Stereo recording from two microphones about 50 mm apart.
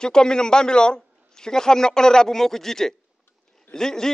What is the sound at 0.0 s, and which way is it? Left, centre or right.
A man's voice, centre.